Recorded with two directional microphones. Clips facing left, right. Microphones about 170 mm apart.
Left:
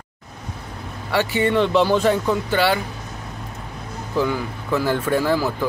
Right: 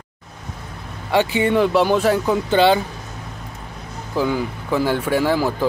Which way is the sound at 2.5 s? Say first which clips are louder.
Right 6 dB; 20° right (ahead or behind).